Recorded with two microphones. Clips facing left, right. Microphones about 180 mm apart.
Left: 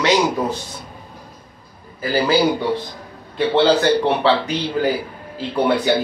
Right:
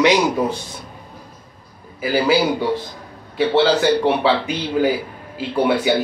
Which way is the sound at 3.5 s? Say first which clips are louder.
Left 1 dB; 5° right (ahead or behind).